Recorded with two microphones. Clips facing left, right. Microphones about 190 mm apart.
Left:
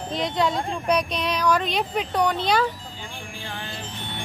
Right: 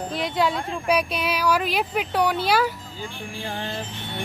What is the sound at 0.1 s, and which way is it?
Speech, 5° right (ahead or behind).